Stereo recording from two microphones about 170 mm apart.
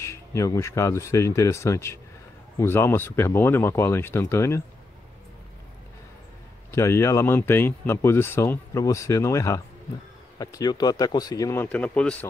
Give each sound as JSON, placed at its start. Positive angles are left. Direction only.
{"t": 0.0, "sound": "speech", "side_deg": 15}
{"t": 6.7, "sound": "speech", "side_deg": 15}